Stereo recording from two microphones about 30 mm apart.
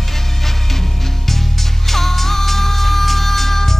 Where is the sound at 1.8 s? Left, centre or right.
Centre.